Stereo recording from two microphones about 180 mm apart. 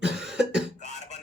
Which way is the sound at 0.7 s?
40° left (ahead or behind).